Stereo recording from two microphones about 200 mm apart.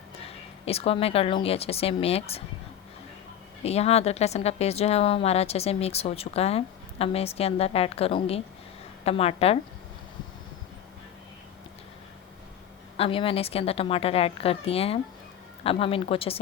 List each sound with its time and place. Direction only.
0.2 s speech: 30° left (ahead or behind)
3.6 s a woman's voice: 30° left (ahead or behind)
13.0 s a woman's voice: 25° left (ahead or behind)